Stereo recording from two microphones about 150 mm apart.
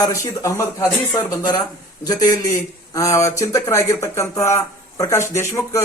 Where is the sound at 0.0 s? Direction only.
20° left (ahead or behind).